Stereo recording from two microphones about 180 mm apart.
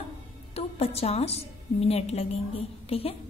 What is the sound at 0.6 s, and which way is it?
A woman's voice, 35° left (ahead or behind).